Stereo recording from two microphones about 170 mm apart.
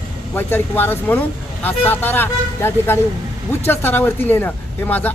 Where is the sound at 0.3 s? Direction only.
10° left (ahead or behind).